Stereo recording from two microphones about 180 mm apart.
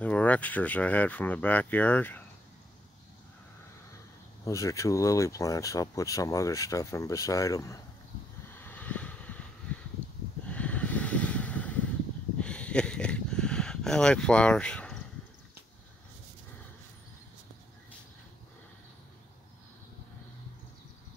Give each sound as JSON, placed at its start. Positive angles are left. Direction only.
{"t": 0.0, "sound": "speech", "side_deg": 10}
{"t": 4.5, "sound": "speech", "side_deg": 15}
{"t": 8.5, "sound": "vehicle", "side_deg": 10}
{"t": 9.7, "sound": "a sound", "side_deg": 10}
{"t": 10.4, "sound": "snort", "side_deg": 5}
{"t": 12.4, "sound": "a sound", "side_deg": 5}